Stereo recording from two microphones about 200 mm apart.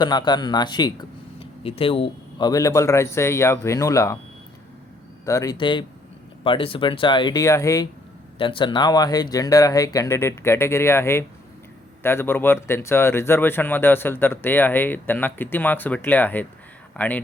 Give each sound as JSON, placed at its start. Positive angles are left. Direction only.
{"t": 0.0, "sound": "speech", "side_deg": 20}
{"t": 5.2, "sound": "speech", "side_deg": 15}